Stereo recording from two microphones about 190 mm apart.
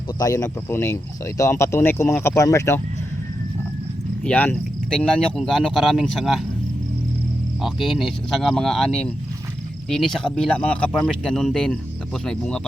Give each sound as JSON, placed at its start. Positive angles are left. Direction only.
{"t": 0.2, "sound": "speech", "side_deg": 20}
{"t": 4.2, "sound": "speech", "side_deg": 5}
{"t": 7.6, "sound": "speech", "side_deg": 0}